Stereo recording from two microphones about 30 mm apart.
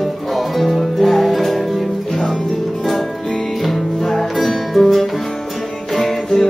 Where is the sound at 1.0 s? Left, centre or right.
Centre.